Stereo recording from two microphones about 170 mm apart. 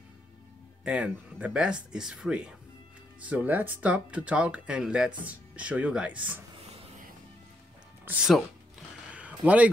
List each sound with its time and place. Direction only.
0.8 s speech: 5° right (ahead or behind)
6.7 s music: 35° right (ahead or behind)
8.0 s speech: 10° right (ahead or behind)
9.1 s a sound: 5° right (ahead or behind)